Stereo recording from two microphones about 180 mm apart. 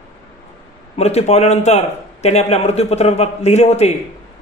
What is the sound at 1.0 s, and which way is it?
Speech, 35° left (ahead or behind).